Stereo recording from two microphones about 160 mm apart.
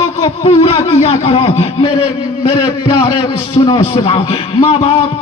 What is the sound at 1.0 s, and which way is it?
A man's voice, 40° left (ahead or behind).